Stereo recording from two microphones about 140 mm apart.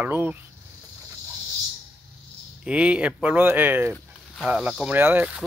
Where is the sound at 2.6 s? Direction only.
10° right (ahead or behind).